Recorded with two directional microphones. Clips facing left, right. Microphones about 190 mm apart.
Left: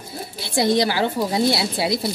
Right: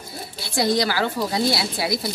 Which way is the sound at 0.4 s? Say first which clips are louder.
Left 2 dB; 25° left (ahead or behind).